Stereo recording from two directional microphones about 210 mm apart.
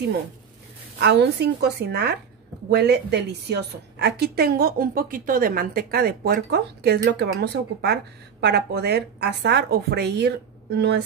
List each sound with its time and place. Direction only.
0.9 s a woman's voice: 50° right (ahead or behind)